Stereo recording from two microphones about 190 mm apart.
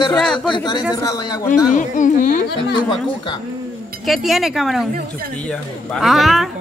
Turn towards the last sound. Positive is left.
turn(degrees=0)  # may be behind; listen again after turning